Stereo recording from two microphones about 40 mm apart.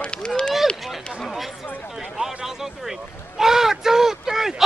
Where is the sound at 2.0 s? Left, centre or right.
Centre.